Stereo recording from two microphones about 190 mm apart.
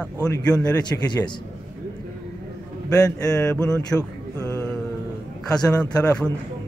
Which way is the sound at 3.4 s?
5° left (ahead or behind).